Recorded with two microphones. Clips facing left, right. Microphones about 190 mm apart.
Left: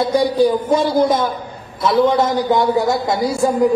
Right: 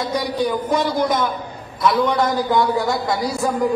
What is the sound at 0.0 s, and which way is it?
A man's voice, 30° left (ahead or behind).